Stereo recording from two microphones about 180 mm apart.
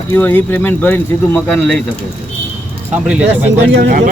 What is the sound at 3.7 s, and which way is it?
Speech, 60° right (ahead or behind).